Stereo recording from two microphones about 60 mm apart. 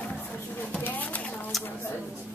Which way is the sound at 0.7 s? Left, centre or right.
Left.